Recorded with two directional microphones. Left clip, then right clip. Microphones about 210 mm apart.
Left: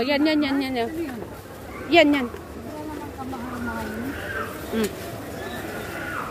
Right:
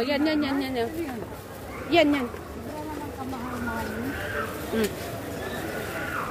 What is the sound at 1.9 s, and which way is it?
Speech, 35° left (ahead or behind).